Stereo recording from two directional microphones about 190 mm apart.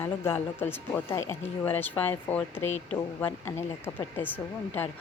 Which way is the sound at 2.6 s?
35° left (ahead or behind).